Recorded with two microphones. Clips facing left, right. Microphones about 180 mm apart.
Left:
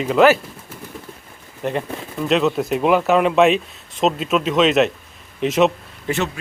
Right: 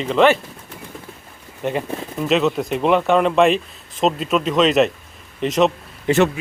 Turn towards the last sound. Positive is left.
turn(degrees=-20)  # may be behind; listen again after turning